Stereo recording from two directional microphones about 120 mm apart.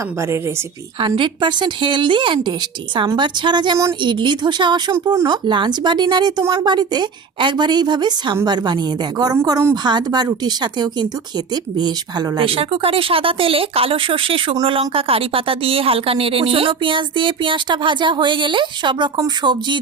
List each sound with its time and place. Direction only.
0.2 s speech: 25° right (ahead or behind)
0.9 s a woman's voice: 45° right (ahead or behind)
5.5 s a woman's voice: 40° right (ahead or behind)
12.5 s a woman's voice: 50° right (ahead or behind)